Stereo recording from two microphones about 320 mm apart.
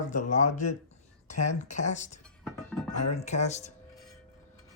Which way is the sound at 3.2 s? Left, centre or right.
Left.